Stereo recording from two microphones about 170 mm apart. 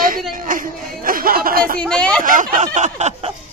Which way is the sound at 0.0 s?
55° right (ahead or behind).